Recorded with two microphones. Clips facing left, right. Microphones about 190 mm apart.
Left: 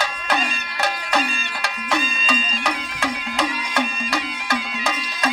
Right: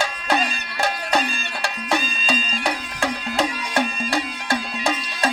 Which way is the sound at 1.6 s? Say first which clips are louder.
Right 1 dB; 40° right (ahead or behind).